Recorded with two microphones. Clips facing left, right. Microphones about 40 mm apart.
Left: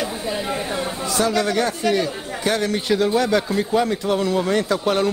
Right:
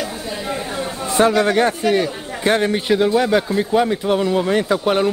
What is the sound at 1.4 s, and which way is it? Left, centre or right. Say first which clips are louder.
Speech: right 5 dB; right.